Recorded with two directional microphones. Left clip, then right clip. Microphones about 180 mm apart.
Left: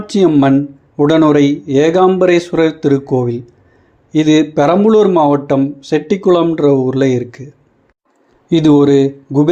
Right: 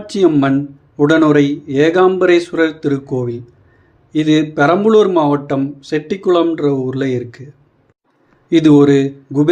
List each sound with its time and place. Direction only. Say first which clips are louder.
0.0 s speech: left 2 dB; 20° left (ahead or behind)